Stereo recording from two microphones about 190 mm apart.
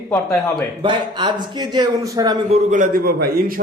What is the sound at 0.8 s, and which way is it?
Speech, 25° right (ahead or behind).